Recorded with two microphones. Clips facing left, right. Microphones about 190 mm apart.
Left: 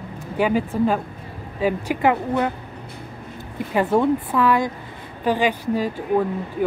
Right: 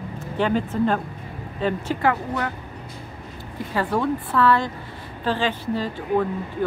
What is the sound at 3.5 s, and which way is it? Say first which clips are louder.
Speech: left 5 dB; 20° left (ahead or behind).